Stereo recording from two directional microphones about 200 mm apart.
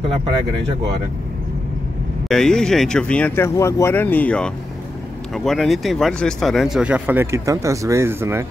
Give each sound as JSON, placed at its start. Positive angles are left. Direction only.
{"t": 2.2, "sound": "speech", "side_deg": 5}